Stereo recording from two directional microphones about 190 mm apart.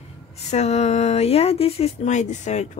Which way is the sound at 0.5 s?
35° left (ahead or behind).